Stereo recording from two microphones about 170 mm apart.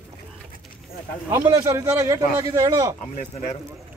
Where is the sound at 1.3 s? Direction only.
20° right (ahead or behind).